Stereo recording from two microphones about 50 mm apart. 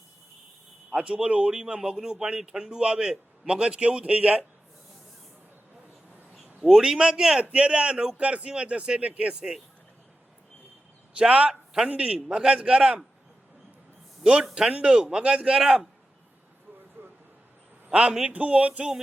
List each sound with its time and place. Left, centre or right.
0.9 s speech: right
6.6 s speech: centre; by 9.3 s right
11.2 s speech: right
14.3 s speech: centre
17.8 s speech: right